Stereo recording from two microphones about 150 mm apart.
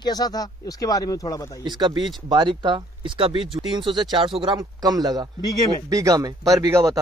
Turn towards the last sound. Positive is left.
turn(degrees=-20)  # may be behind; listen again after turning